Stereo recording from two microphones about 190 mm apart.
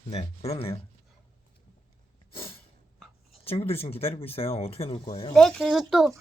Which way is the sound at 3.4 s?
30° left (ahead or behind).